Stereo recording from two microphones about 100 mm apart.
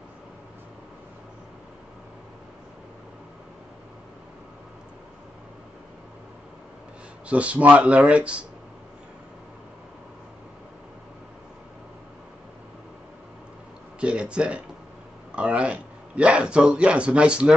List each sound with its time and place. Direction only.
7.2 s speech: 15° right (ahead or behind)
13.9 s speech: 10° right (ahead or behind)